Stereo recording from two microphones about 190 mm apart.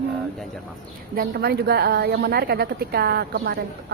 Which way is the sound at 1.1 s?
50° right (ahead or behind).